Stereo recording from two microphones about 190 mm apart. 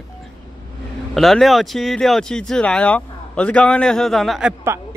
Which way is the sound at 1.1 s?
Centre (ahead or behind).